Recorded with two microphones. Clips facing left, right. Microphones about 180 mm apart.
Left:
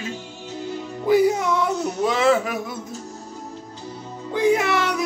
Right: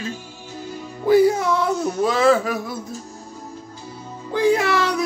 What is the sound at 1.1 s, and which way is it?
Music, 15° left (ahead or behind).